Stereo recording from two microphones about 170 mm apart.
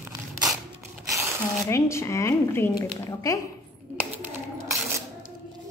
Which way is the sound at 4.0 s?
10° right (ahead or behind).